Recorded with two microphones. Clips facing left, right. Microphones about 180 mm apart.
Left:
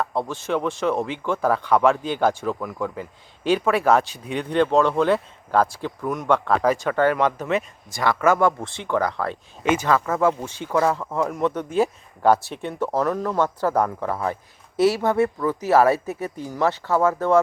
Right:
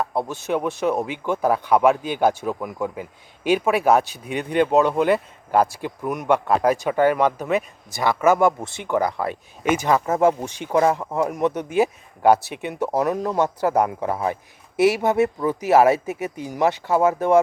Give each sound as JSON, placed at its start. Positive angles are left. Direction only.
{"t": 0.0, "sound": "speech", "side_deg": -10}